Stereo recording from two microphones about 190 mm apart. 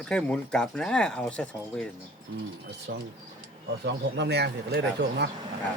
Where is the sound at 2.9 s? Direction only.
60° right (ahead or behind).